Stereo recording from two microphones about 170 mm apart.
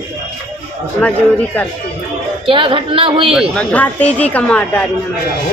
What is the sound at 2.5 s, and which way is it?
Speech, 30° right (ahead or behind).